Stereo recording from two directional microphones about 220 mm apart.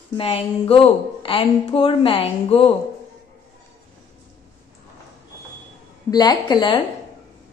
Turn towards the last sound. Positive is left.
turn(degrees=20)  # may be behind; listen again after turning